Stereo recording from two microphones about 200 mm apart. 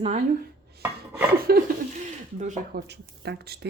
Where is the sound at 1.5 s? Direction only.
50° right (ahead or behind).